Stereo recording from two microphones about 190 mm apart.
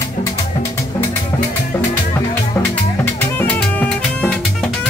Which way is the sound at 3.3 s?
5° left (ahead or behind).